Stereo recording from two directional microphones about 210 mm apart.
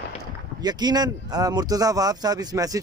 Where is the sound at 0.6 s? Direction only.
20° right (ahead or behind).